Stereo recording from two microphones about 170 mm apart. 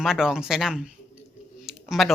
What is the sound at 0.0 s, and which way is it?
Speech, 5° right (ahead or behind).